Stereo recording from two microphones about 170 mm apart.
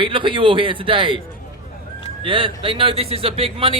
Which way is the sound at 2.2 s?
30° right (ahead or behind).